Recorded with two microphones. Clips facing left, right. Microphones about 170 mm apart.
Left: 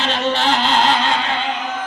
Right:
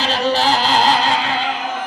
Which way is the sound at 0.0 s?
35° right (ahead or behind).